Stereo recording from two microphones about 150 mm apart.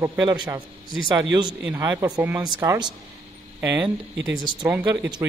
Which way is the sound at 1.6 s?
10° right (ahead or behind).